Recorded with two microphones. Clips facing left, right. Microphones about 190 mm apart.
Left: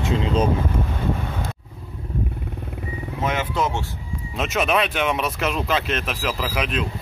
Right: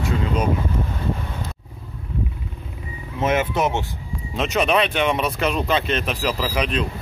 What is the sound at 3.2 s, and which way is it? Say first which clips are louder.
Speech: right 4 dB; 25° right (ahead or behind).